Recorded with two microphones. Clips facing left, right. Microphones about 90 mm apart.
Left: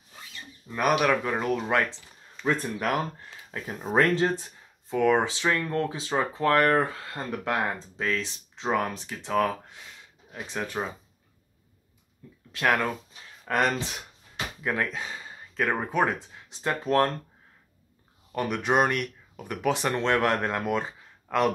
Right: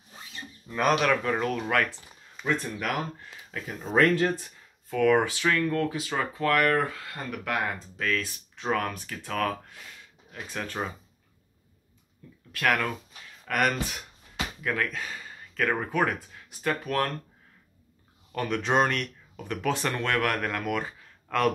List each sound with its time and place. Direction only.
0.7 s speech: 10° left (ahead or behind)
2.4 s speech: 10° right (ahead or behind)
3.6 s speech: 30° left (ahead or behind); by 10.9 s 15° left (ahead or behind)
12.5 s speech: 20° left (ahead or behind)
18.3 s speech: 15° left (ahead or behind)